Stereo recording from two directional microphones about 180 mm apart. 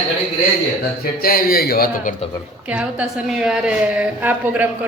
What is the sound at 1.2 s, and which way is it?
Speech, 55° left (ahead or behind).